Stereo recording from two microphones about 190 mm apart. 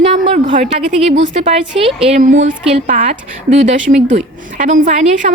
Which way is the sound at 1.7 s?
30° right (ahead or behind).